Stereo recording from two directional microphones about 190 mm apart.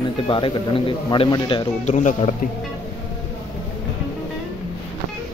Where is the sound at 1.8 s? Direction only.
40° left (ahead or behind).